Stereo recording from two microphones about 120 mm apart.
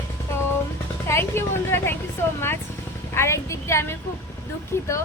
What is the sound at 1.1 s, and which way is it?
Speech, 20° left (ahead or behind).